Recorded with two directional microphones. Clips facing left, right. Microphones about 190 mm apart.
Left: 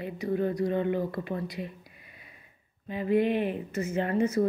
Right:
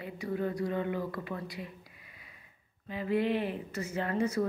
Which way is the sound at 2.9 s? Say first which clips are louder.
Left 4 dB; 20° left (ahead or behind).